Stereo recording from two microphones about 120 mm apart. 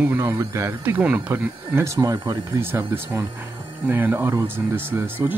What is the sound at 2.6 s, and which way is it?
Speech, 20° right (ahead or behind).